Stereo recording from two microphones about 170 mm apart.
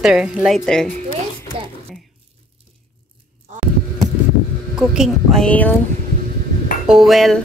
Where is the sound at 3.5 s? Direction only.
45° right (ahead or behind).